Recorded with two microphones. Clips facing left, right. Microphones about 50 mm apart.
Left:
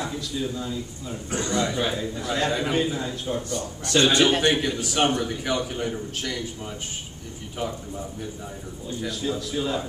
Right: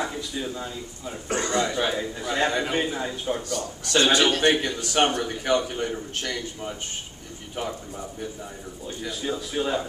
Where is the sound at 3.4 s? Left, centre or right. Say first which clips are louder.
Even; left.